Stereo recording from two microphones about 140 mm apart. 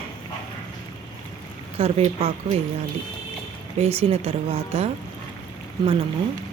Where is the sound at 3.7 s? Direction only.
45° right (ahead or behind).